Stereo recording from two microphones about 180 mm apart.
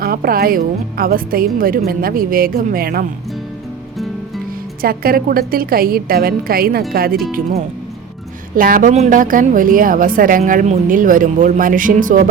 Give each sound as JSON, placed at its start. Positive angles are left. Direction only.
{"t": 0.0, "sound": "a woman's voice", "side_deg": -55}
{"t": 4.8, "sound": "a woman's voice", "side_deg": -55}
{"t": 8.5, "sound": "a woman's voice", "side_deg": -50}